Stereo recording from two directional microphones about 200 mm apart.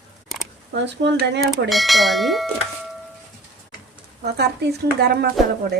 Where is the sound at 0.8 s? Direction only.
60° right (ahead or behind).